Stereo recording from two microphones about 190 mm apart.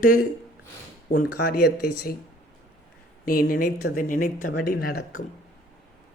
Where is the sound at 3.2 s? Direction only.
50° left (ahead or behind).